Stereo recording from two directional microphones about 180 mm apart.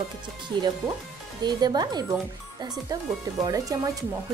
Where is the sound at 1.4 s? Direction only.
25° right (ahead or behind).